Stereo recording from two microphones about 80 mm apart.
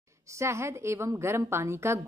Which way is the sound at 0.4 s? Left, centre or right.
Right.